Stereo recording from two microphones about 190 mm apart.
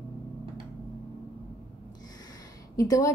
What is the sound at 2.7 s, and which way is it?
Speech, 15° left (ahead or behind).